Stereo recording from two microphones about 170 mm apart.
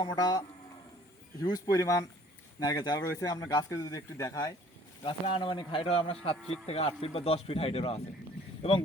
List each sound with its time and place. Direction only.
0.0 s speech: 25° left (ahead or behind)
5.0 s speech: 30° left (ahead or behind)